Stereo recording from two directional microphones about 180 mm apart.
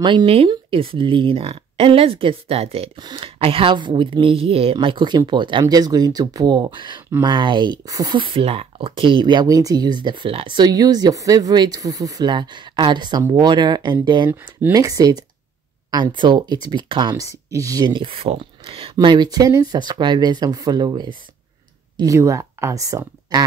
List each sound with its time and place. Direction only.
0.0 s speech: 30° right (ahead or behind)
14.3 s speech: 10° right (ahead or behind)